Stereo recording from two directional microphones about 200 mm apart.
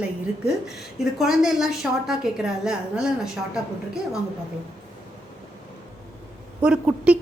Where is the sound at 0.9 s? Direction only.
Centre (ahead or behind).